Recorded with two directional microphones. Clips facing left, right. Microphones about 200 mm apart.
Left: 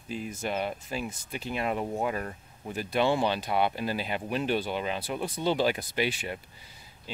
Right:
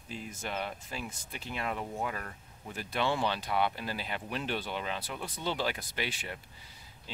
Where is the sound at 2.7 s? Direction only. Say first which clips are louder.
Left 6 dB; 15° left (ahead or behind).